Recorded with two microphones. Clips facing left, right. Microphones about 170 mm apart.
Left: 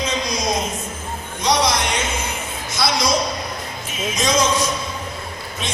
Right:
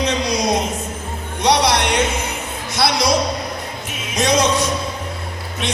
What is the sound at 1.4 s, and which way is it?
Music, 65° right (ahead or behind).